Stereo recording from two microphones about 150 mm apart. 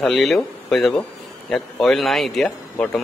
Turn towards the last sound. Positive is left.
turn(degrees=5)  # may be behind; listen again after turning